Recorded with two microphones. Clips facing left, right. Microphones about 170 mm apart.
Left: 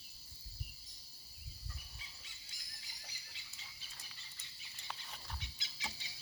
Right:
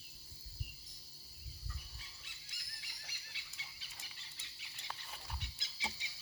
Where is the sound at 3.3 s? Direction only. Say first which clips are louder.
Right 2 dB; 75° right (ahead or behind).